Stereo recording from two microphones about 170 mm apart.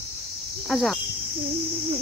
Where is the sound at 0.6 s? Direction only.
Centre (ahead or behind).